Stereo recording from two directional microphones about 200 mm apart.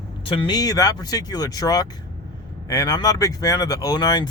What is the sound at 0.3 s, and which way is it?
Speech, 25° left (ahead or behind).